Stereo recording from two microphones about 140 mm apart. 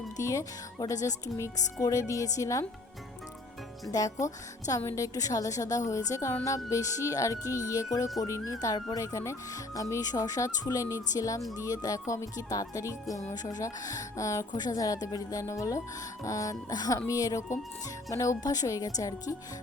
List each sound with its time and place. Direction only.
0.2 s speech: 25° left (ahead or behind)
3.9 s speech: 25° left (ahead or behind)